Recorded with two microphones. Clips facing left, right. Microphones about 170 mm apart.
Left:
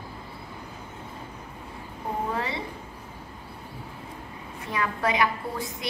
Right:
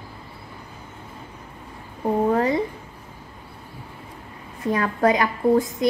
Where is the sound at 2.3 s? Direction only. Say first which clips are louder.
Right 10 dB; 45° right (ahead or behind).